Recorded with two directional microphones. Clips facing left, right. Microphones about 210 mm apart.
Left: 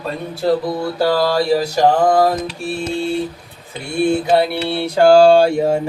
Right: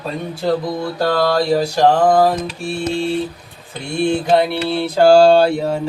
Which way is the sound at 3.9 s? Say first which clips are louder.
Even; 5° left (ahead or behind).